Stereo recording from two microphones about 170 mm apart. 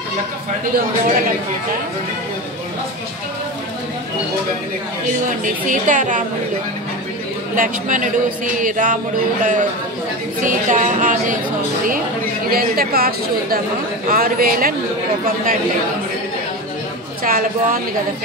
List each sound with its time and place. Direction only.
0.7 s a woman's voice: 55° right (ahead or behind)
5.4 s a woman's voice: 50° right (ahead or behind)
7.5 s a woman's voice: 50° right (ahead or behind)
12.4 s a woman's voice: 60° right (ahead or behind)
17.2 s a woman's voice: 55° right (ahead or behind)